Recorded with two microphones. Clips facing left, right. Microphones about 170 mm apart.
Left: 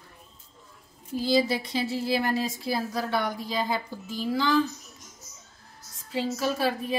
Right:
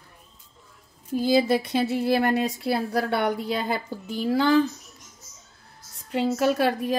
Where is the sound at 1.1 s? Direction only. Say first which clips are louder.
Right 4 dB; 55° right (ahead or behind).